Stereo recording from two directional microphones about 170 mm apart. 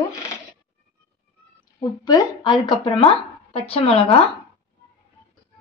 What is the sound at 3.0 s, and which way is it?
Speech, 35° left (ahead or behind).